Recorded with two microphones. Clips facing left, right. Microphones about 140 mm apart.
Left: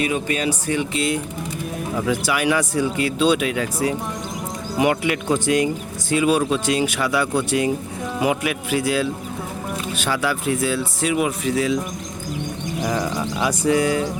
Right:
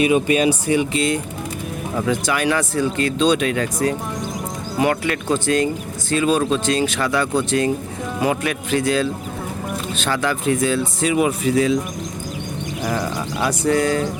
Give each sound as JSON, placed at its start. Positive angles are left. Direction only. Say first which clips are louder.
{"t": 0.0, "sound": "speech", "louder": "right 6 dB", "side_deg": -15}
{"t": 0.9, "sound": "speech", "louder": "right 2 dB", "side_deg": 5}
{"t": 13.6, "sound": "speech", "louder": "right 1 dB", "side_deg": 10}